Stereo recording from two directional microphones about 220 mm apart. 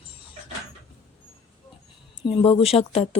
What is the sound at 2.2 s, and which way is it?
Speech, 25° left (ahead or behind).